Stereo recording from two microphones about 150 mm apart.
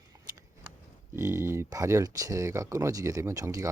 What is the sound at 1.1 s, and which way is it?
Speech, 20° right (ahead or behind).